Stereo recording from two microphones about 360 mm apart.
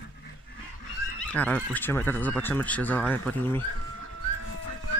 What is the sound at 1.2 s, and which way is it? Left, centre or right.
Speech, centre.